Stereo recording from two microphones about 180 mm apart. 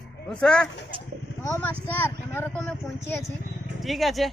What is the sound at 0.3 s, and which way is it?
Speech, 5° left (ahead or behind).